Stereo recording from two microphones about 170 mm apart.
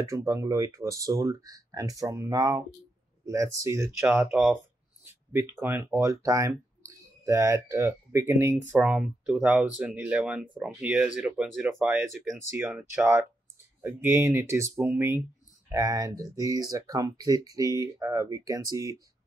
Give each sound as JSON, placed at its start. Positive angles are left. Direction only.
{"t": 0.0, "sound": "speech", "side_deg": -20}